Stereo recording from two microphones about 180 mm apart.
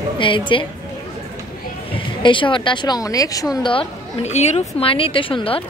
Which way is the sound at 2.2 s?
25° left (ahead or behind).